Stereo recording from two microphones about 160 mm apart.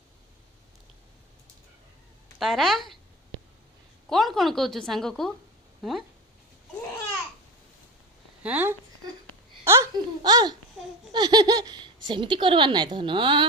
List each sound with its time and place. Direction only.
2.4 s a woman's voice: centre (ahead or behind)
4.1 s a woman's voice: centre (ahead or behind)
8.4 s speech: 10° right (ahead or behind); by 13.4 s 30° right (ahead or behind)